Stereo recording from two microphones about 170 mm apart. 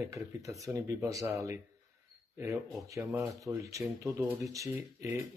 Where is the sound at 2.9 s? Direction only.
20° right (ahead or behind).